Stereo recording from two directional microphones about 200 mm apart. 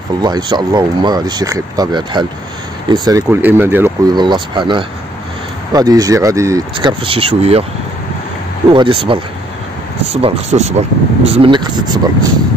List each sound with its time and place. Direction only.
0.2 s speech: 20° right (ahead or behind)
4.2 s speech: 25° right (ahead or behind)
8.7 s speech: 25° right (ahead or behind)